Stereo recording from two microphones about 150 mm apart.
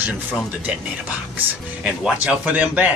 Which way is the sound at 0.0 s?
10° right (ahead or behind).